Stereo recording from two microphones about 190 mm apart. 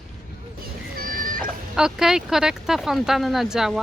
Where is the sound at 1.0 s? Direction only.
50° right (ahead or behind).